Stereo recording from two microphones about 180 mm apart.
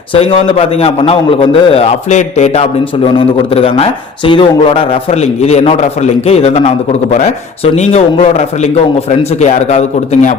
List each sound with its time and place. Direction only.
0.1 s a man's voice: 30° left (ahead or behind)